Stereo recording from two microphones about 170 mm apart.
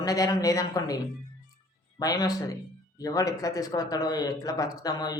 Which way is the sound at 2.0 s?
20° left (ahead or behind).